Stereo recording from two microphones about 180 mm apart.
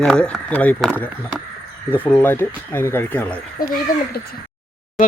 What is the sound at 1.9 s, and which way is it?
Speech, 10° left (ahead or behind).